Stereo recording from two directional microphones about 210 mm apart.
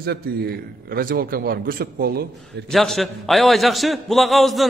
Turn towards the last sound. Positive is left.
turn(degrees=0)  # may be behind; listen again after turning